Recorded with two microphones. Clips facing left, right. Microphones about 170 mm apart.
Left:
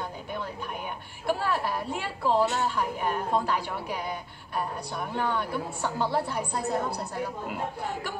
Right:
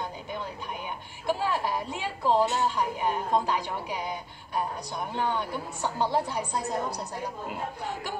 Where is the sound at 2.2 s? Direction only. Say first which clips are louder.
Right 1 dB; 15° right (ahead or behind).